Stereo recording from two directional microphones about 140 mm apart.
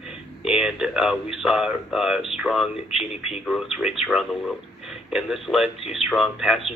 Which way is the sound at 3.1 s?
50° left (ahead or behind).